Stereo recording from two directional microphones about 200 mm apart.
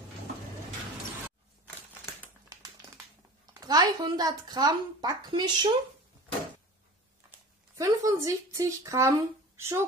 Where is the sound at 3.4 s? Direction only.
20° right (ahead or behind).